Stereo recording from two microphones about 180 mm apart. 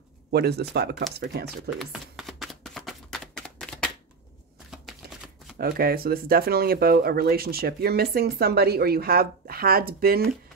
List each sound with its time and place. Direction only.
0.3 s speech: 65° right (ahead or behind)
1.8 s shuffling cards: centre (ahead or behind)
4.6 s a sound: centre (ahead or behind)
5.6 s speech: 55° right (ahead or behind)